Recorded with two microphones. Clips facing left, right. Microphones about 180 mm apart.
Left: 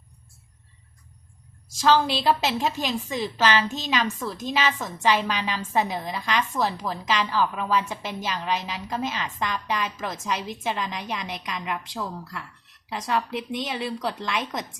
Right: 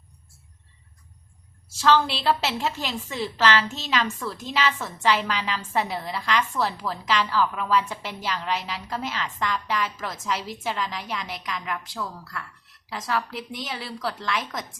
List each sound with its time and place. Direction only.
1.6 s a woman's voice: 15° left (ahead or behind)